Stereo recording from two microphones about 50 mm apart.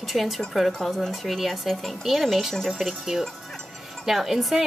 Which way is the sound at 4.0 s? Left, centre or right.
Centre.